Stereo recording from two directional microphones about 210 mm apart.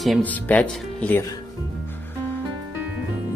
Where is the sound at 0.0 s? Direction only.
5° left (ahead or behind).